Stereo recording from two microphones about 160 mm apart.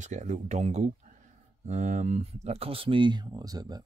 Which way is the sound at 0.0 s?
50° right (ahead or behind).